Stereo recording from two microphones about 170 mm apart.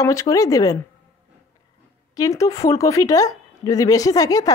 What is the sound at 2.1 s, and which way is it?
A woman's voice, 20° left (ahead or behind).